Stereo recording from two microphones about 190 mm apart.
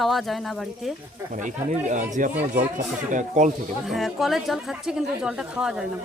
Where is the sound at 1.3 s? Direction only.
40° right (ahead or behind).